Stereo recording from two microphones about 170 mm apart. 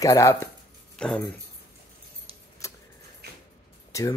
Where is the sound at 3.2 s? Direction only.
70° right (ahead or behind).